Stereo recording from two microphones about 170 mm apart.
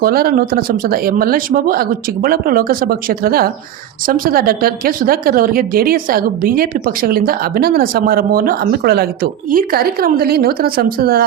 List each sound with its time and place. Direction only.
0.0 s speech: 60° right (ahead or behind)